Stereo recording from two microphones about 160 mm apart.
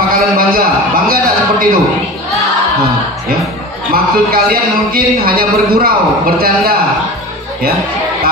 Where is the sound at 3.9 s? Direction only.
65° right (ahead or behind).